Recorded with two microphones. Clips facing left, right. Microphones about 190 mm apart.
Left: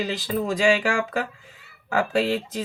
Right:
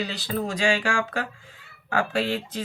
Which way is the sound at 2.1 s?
40° left (ahead or behind).